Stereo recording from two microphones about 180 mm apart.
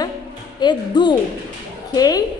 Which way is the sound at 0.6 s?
25° left (ahead or behind).